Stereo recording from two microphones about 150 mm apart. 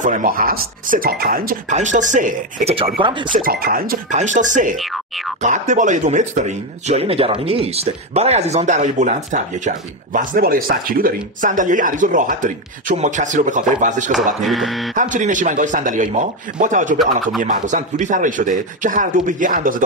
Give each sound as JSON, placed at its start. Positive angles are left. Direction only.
{"t": 0.0, "sound": "speech", "side_deg": -65}
{"t": 1.8, "sound": "speech", "side_deg": -55}
{"t": 3.0, "sound": "speech", "side_deg": -35}
{"t": 3.3, "sound": "speech", "side_deg": -80}
{"t": 4.1, "sound": "speech", "side_deg": -55}
{"t": 4.7, "sound": "music", "side_deg": 0}
{"t": 5.4, "sound": "speech", "side_deg": -55}
{"t": 11.4, "sound": "speech", "side_deg": -60}
{"t": 14.1, "sound": "speech", "side_deg": 0}
{"t": 15.0, "sound": "speech", "side_deg": -60}